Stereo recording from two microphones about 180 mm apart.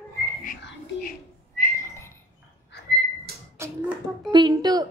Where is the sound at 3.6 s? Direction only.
15° right (ahead or behind).